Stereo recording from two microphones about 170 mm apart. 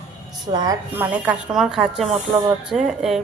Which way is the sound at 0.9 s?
10° right (ahead or behind).